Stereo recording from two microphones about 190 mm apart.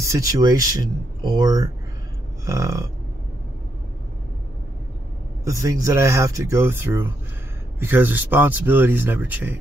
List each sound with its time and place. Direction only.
0.0 s speech: 15° right (ahead or behind)
5.4 s speech: 15° right (ahead or behind)